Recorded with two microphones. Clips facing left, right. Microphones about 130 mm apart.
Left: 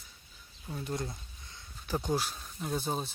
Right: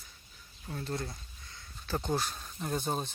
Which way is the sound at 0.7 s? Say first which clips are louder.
Left 1 dB; 15° left (ahead or behind).